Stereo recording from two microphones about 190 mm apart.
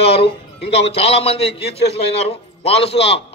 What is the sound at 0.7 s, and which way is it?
A man's voice, 35° left (ahead or behind).